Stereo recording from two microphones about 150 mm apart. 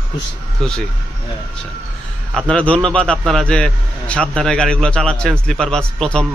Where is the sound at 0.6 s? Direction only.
Centre (ahead or behind).